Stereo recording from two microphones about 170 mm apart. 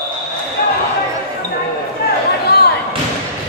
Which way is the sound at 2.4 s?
70° left (ahead or behind).